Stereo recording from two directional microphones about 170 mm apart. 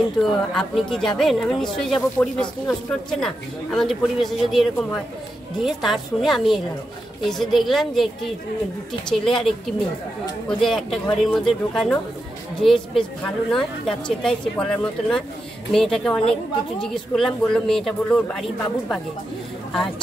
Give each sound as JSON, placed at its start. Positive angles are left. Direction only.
{"t": 0.2, "sound": "a woman's voice", "side_deg": 0}
{"t": 2.1, "sound": "speech", "side_deg": 20}
{"t": 2.9, "sound": "a woman's voice", "side_deg": 5}
{"t": 10.6, "sound": "a woman's voice", "side_deg": 0}